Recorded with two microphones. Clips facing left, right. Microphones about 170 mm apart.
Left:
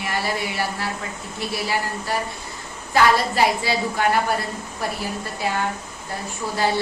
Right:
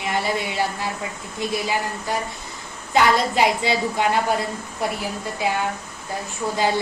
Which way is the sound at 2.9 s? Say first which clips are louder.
Even; 20° right (ahead or behind).